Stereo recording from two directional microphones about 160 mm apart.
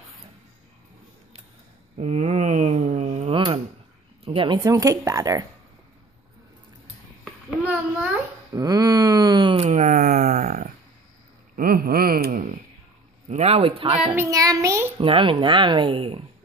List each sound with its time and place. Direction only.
2.0 s a sound: 45° right (ahead or behind)
4.6 s a child's voice: 20° right (ahead or behind)
7.6 s a sound: 10° right (ahead or behind)
8.5 s wail: 25° right (ahead or behind)
9.7 s a sound: 50° right (ahead or behind)
11.5 s wail: 65° right (ahead or behind)
13.3 s speech: 40° right (ahead or behind)
14.1 s a child's voice: 20° right (ahead or behind)
15.0 s a child's voice: 30° right (ahead or behind)